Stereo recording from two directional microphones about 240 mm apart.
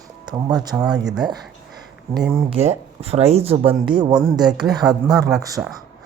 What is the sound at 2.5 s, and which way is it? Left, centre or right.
Speech, right.